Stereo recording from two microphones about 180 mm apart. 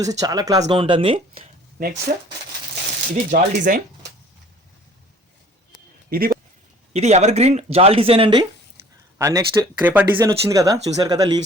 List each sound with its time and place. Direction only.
0.0 s speech: 20° right (ahead or behind)
1.8 s speech: 45° right (ahead or behind)
3.2 s speech: 50° right (ahead or behind)
6.1 s speech: 55° right (ahead or behind)
6.9 s speech: 40° right (ahead or behind)
9.1 s speech: 15° right (ahead or behind)